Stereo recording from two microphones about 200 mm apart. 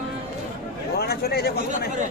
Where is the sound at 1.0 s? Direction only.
50° left (ahead or behind).